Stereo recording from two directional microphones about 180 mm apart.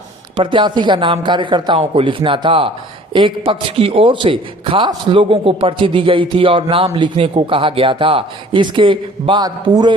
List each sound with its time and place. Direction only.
0.3 s a man's voice: 25° right (ahead or behind)